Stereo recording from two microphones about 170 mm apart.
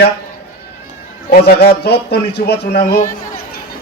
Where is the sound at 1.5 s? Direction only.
75° left (ahead or behind).